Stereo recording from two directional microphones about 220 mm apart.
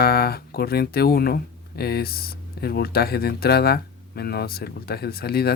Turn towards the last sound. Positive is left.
turn(degrees=45)  # may be behind; listen again after turning